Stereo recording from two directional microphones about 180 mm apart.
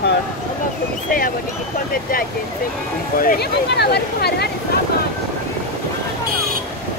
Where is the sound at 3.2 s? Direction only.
60° left (ahead or behind).